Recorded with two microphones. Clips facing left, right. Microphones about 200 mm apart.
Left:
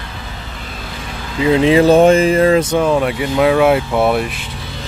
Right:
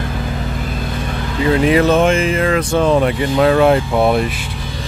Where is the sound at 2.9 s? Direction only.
Centre (ahead or behind).